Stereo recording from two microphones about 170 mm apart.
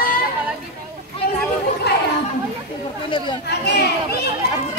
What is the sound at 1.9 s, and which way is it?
Chatter, 75° left (ahead or behind).